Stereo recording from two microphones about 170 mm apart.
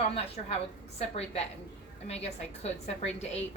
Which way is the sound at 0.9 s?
40° left (ahead or behind).